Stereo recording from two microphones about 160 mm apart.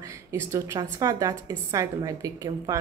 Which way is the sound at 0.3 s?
20° right (ahead or behind).